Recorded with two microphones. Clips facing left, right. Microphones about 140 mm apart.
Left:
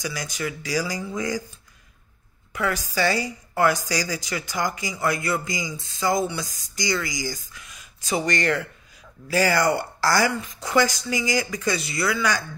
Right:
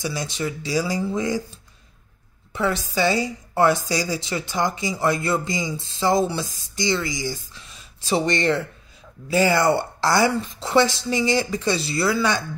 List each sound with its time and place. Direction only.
0.0 s a woman's voice: 25° right (ahead or behind)
2.5 s a woman's voice: 25° right (ahead or behind)